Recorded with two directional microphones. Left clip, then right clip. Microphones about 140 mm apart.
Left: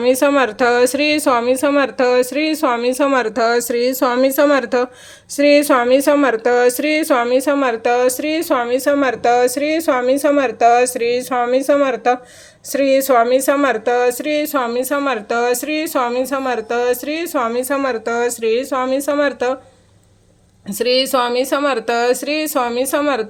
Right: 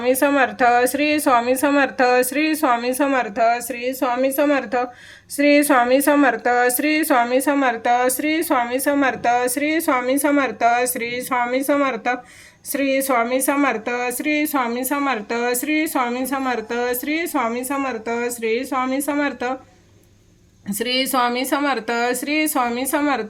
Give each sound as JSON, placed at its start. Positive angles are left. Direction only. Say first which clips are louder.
{"t": 0.0, "sound": "speech", "louder": "left 3 dB", "side_deg": 30}
{"t": 3.2, "sound": "speech", "louder": "left 3 dB", "side_deg": 45}
{"t": 5.4, "sound": "speech", "louder": "left 3 dB", "side_deg": 25}
{"t": 20.7, "sound": "speech", "louder": "left 6 dB", "side_deg": 25}